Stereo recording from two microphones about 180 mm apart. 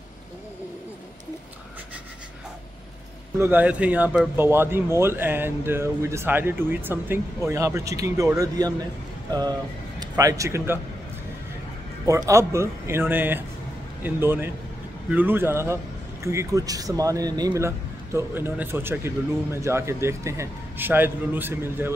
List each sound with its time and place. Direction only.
3.3 s a man's voice: 10° right (ahead or behind)
9.9 s a man's voice: 20° right (ahead or behind)
12.1 s a man's voice: 15° right (ahead or behind)